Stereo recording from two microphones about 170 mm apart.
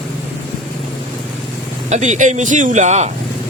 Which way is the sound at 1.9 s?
45° right (ahead or behind).